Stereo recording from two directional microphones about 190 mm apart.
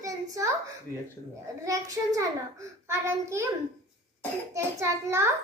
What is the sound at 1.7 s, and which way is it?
A child's voice, 15° right (ahead or behind).